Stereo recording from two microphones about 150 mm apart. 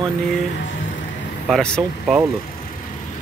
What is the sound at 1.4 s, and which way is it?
Speech, 5° left (ahead or behind).